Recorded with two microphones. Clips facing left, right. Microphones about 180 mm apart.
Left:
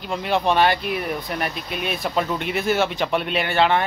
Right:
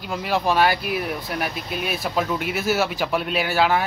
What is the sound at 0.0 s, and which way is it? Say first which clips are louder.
Speech: left 1 dB; centre (ahead or behind).